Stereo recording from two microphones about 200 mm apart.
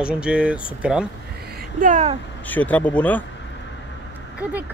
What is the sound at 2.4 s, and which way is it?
Speech, 10° left (ahead or behind).